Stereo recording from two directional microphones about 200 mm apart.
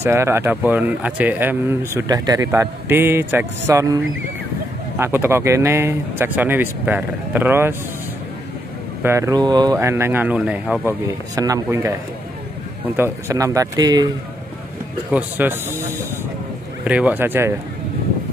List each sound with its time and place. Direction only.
0.0 s speech: 10° right (ahead or behind)
9.0 s speech: 15° right (ahead or behind)
15.0 s speech: 10° right (ahead or behind)